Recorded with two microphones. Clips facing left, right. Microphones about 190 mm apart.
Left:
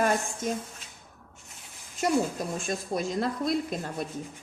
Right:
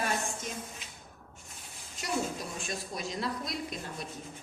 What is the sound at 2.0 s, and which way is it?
A woman's voice, 50° left (ahead or behind).